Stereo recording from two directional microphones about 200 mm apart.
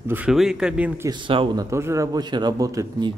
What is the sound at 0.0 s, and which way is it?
Speech, 10° right (ahead or behind).